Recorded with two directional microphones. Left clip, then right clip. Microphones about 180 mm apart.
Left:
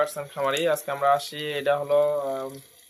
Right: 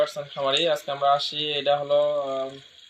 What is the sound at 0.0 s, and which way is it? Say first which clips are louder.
Speech: right 1 dB; 5° left (ahead or behind).